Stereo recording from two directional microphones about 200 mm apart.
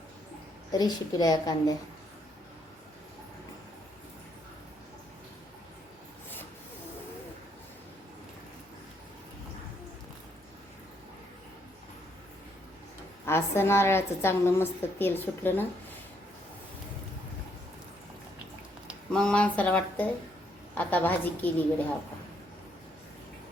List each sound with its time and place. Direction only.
0.7 s a child's voice: 20° left (ahead or behind)
13.2 s a woman's voice: 10° left (ahead or behind)
18.9 s a woman's voice: 5° left (ahead or behind)